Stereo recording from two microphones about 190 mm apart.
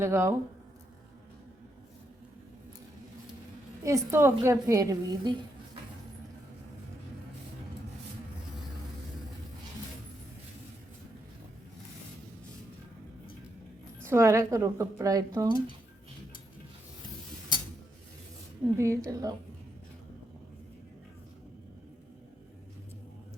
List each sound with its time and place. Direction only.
0.0 s speech: 15° right (ahead or behind)
3.8 s speech: 15° right (ahead or behind)
14.0 s speech: 15° right (ahead or behind)
18.8 s speech: 15° right (ahead or behind)